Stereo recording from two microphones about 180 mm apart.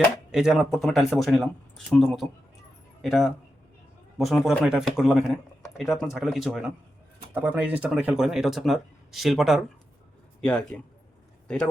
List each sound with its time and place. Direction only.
0.3 s a man's voice: centre (ahead or behind)